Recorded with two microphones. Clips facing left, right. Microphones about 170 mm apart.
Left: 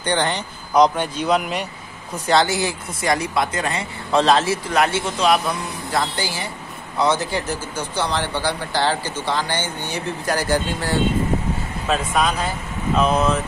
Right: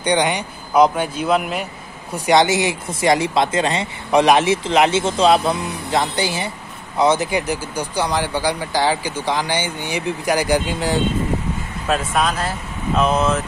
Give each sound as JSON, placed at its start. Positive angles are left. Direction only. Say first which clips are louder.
{"t": 0.0, "sound": "speech", "louder": "right 3 dB", "side_deg": -15}
{"t": 2.1, "sound": "speech", "louder": "right 3 dB", "side_deg": -15}
{"t": 11.9, "sound": "speech", "louder": "right 1 dB", "side_deg": 0}